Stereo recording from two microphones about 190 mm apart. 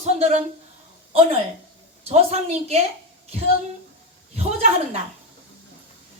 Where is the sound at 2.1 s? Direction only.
35° right (ahead or behind).